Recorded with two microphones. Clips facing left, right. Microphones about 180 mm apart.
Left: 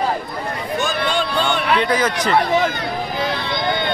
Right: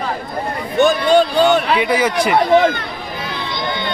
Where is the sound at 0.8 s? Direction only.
60° right (ahead or behind).